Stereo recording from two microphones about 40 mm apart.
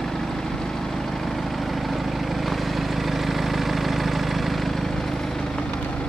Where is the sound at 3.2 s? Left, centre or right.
Centre.